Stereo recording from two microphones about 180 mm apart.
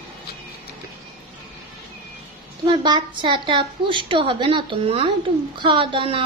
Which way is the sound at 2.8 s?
25° right (ahead or behind).